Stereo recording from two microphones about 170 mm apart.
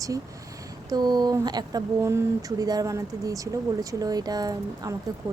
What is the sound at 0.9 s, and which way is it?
Speech, 25° right (ahead or behind).